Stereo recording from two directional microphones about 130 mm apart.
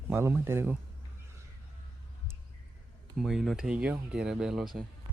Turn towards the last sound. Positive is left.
turn(degrees=-5)  # may be behind; listen again after turning